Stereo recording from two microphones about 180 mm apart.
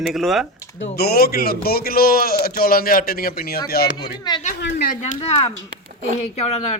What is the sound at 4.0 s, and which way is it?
Speech, 25° left (ahead or behind).